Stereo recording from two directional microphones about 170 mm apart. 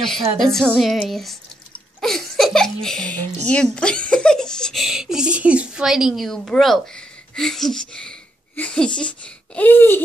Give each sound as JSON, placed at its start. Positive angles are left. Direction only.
{"t": 0.4, "sound": "speech", "side_deg": 5}
{"t": 2.0, "sound": "giggle", "side_deg": 0}
{"t": 3.4, "sound": "speech", "side_deg": 5}